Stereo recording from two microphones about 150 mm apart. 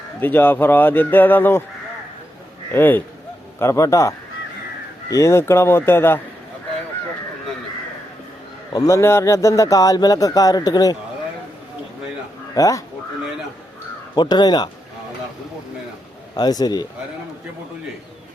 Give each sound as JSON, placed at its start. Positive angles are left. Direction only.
{"t": 0.2, "sound": "speech", "side_deg": 15}
{"t": 2.7, "sound": "speech", "side_deg": 15}
{"t": 5.1, "sound": "speech", "side_deg": 20}
{"t": 8.7, "sound": "speech", "side_deg": 20}
{"t": 12.5, "sound": "speech", "side_deg": 20}
{"t": 14.2, "sound": "speech", "side_deg": 30}
{"t": 16.3, "sound": "speech", "side_deg": 25}